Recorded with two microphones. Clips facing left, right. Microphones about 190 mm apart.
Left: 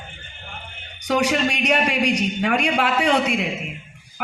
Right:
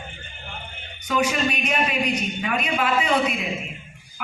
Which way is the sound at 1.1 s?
75° left (ahead or behind).